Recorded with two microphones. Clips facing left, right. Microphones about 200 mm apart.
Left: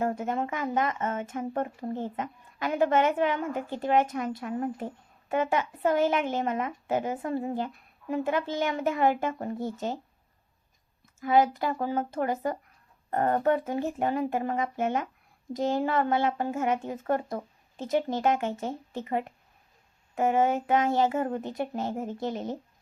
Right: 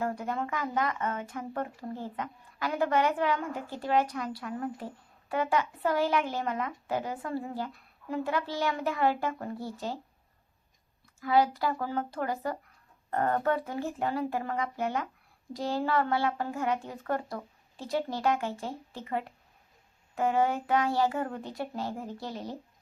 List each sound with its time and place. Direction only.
0.0 s speech: 20° left (ahead or behind)
11.2 s speech: 20° left (ahead or behind)